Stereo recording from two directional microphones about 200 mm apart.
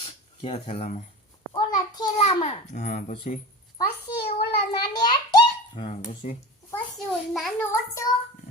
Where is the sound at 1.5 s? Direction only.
20° left (ahead or behind).